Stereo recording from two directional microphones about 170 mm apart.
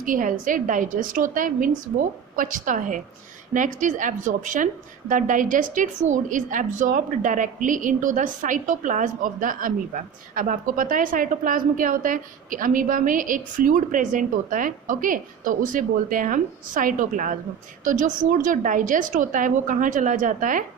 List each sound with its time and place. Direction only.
0.0 s a woman's voice: 55° right (ahead or behind)